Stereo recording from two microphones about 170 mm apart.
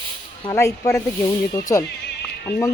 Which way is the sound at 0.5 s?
20° left (ahead or behind).